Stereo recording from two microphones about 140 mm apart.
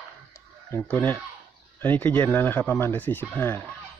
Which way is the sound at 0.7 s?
15° left (ahead or behind).